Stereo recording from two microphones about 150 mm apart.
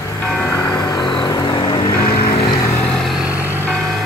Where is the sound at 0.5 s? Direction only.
20° left (ahead or behind).